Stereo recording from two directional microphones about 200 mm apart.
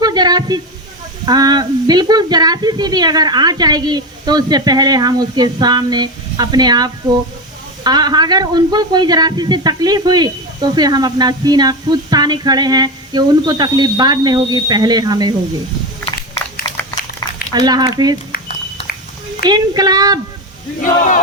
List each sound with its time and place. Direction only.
0.0 s a sound: 20° right (ahead or behind)
1.2 s speech: 20° right (ahead or behind)
17.5 s speech: 20° right (ahead or behind)
19.5 s speech: 20° right (ahead or behind)
20.8 s speech: 40° left (ahead or behind)